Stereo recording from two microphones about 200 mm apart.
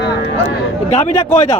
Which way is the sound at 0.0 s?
60° left (ahead or behind).